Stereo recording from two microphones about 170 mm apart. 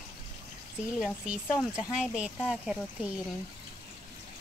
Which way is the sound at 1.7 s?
5° right (ahead or behind).